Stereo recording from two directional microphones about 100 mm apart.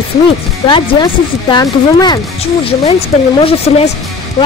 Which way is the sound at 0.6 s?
55° left (ahead or behind).